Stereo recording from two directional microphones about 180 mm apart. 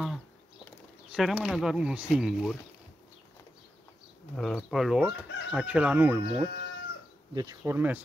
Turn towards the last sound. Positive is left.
turn(degrees=-10)  # may be behind; listen again after turning